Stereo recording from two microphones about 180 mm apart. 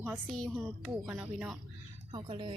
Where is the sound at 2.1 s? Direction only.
30° right (ahead or behind).